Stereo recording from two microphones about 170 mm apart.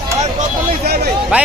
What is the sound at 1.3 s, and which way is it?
Speech, 5° right (ahead or behind).